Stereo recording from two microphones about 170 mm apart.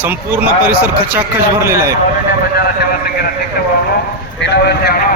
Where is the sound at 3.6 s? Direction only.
65° left (ahead or behind).